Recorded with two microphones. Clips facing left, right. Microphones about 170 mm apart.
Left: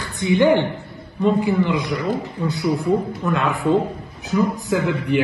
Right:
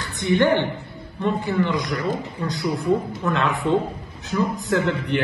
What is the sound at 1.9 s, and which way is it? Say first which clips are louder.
A man's voice: left 2 dB; centre (ahead or behind).